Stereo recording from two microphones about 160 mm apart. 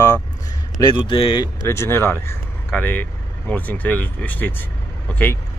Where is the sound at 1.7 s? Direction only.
15° left (ahead or behind).